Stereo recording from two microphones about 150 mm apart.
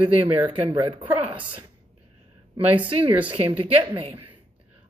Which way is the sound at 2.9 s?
35° right (ahead or behind).